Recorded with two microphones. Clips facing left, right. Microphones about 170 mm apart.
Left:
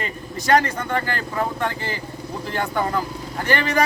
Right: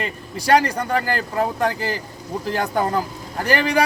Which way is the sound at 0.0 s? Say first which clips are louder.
Right 1 dB; 35° right (ahead or behind).